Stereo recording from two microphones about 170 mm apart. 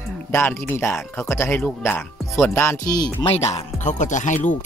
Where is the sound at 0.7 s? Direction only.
15° left (ahead or behind).